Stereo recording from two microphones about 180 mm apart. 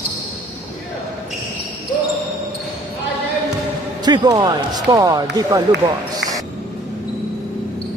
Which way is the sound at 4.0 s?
20° right (ahead or behind).